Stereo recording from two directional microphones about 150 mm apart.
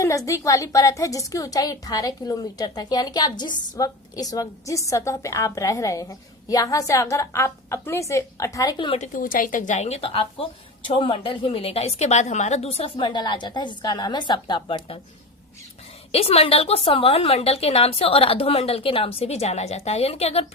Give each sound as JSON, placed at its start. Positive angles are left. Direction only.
{"t": 0.0, "sound": "a woman's voice", "side_deg": 20}
{"t": 9.1, "sound": "a woman's voice", "side_deg": 65}
{"t": 16.1, "sound": "a woman's voice", "side_deg": 40}